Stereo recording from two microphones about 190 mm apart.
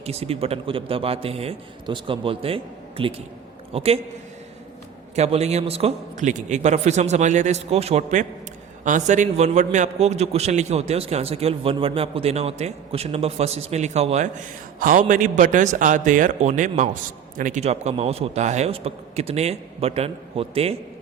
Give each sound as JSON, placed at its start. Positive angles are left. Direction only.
{"t": 0.0, "sound": "a man's voice", "side_deg": -30}
{"t": 5.1, "sound": "a man's voice", "side_deg": -35}
{"t": 14.8, "sound": "a man's voice", "side_deg": -45}